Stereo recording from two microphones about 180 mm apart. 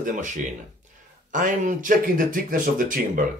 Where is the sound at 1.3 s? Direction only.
45° right (ahead or behind).